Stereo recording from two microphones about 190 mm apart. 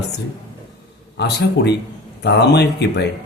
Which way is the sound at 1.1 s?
60° left (ahead or behind).